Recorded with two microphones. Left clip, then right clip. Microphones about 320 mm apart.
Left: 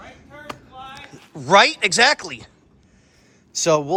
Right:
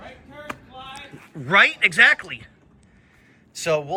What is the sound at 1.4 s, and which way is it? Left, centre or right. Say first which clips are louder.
Speech: left 2 dB; centre.